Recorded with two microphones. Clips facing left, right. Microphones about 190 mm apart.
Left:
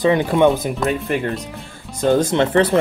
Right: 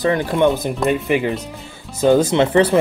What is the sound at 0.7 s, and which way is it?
Speech, centre (ahead or behind).